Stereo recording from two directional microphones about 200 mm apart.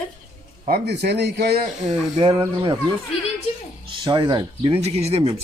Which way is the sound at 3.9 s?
20° right (ahead or behind).